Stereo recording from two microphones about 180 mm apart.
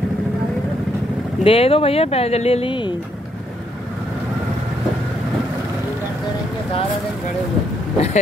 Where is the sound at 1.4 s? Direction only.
30° left (ahead or behind).